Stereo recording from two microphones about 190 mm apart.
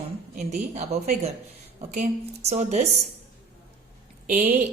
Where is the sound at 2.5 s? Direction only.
40° right (ahead or behind).